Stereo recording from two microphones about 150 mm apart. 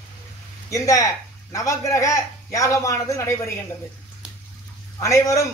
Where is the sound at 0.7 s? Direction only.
20° left (ahead or behind).